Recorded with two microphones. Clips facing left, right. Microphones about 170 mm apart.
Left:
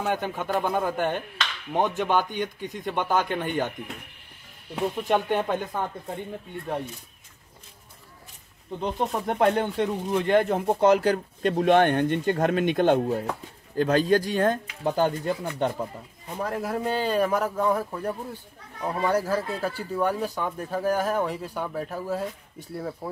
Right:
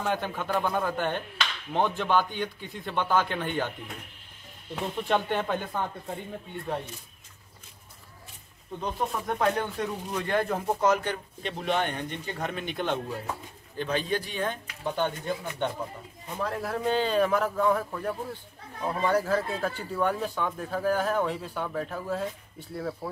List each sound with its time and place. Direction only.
0.0 s speech: 10° left (ahead or behind)
8.8 s speech: 30° left (ahead or behind)
11.1 s speech: 45° left (ahead or behind)
16.3 s speech: 15° left (ahead or behind)